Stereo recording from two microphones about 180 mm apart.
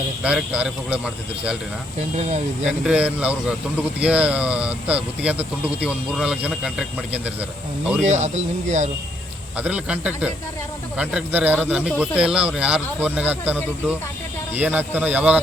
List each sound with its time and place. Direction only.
0.2 s speech: 5° right (ahead or behind)
2.6 s a man's voice: 5° right (ahead or behind)
8.0 s speech: 40° right (ahead or behind)
9.6 s a man's voice: 5° right (ahead or behind)